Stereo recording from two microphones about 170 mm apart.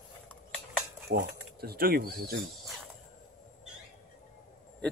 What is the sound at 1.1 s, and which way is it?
Speech, 65° right (ahead or behind).